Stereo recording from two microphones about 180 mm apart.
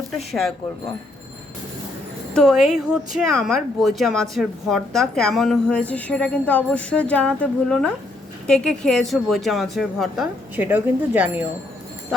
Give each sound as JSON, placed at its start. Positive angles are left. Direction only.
{"t": 0.3, "sound": "speech", "side_deg": 0}
{"t": 2.3, "sound": "speech", "side_deg": 0}